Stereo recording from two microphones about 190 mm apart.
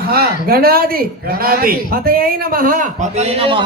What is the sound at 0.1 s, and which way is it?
A man's voice, 50° right (ahead or behind).